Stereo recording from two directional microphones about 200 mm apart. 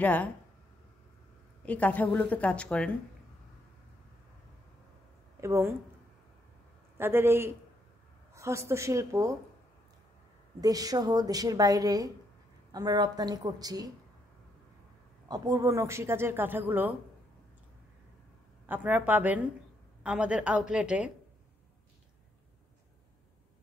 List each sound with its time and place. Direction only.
0.0 s speech: 5° left (ahead or behind)
1.7 s speech: 5° left (ahead or behind)
5.4 s speech: 15° right (ahead or behind)
7.0 s speech: 10° right (ahead or behind)
10.6 s a woman's voice: 20° right (ahead or behind)
15.2 s speech: 20° right (ahead or behind)
18.7 s a woman's voice: 10° right (ahead or behind)